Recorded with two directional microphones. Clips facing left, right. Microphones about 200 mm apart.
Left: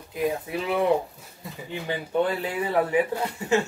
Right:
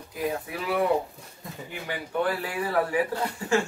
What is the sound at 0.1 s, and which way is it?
Speech, 20° left (ahead or behind).